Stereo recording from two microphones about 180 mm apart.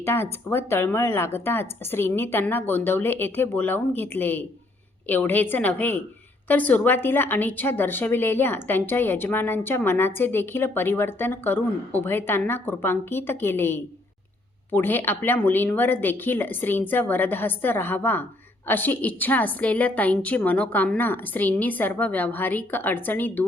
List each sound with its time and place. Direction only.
0.0 s a woman's voice: 15° left (ahead or behind)